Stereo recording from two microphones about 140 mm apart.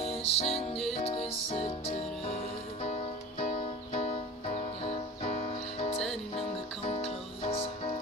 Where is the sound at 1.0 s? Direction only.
45° left (ahead or behind).